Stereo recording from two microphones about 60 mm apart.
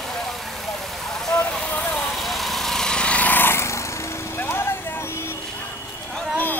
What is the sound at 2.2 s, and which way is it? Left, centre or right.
Lawn mower, centre.